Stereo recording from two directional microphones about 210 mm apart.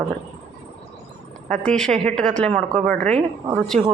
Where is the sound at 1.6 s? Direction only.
5° left (ahead or behind).